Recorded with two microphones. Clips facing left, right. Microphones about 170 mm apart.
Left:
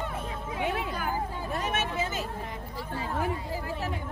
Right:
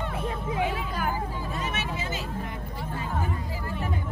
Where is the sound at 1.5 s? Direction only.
55° left (ahead or behind).